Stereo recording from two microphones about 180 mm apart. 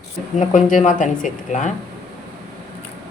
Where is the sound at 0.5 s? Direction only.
45° left (ahead or behind).